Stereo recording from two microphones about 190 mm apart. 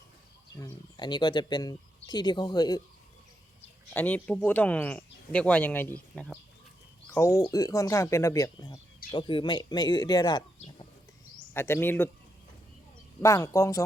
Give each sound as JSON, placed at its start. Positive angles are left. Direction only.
{"t": 0.6, "sound": "speech", "side_deg": 25}
{"t": 3.9, "sound": "speech", "side_deg": 10}
{"t": 7.1, "sound": "speech", "side_deg": 15}
{"t": 11.5, "sound": "speech", "side_deg": 10}
{"t": 13.2, "sound": "speech", "side_deg": 15}